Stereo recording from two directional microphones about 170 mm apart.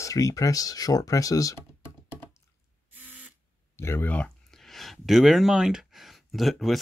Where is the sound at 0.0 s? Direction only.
20° left (ahead or behind).